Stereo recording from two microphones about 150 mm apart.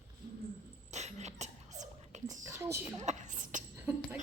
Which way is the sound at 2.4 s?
20° right (ahead or behind).